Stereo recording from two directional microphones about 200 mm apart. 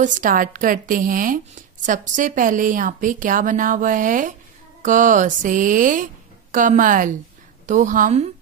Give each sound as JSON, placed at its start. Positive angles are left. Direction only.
{"t": 0.0, "sound": "a woman's voice", "side_deg": -40}